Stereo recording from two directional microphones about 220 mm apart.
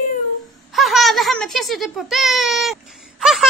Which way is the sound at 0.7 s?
Centre (ahead or behind).